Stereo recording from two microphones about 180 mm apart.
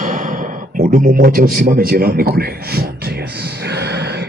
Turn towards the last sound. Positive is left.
turn(degrees=-65)  # may be behind; listen again after turning